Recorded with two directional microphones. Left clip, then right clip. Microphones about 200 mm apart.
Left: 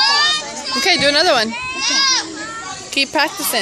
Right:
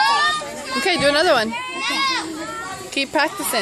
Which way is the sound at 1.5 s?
20° left (ahead or behind).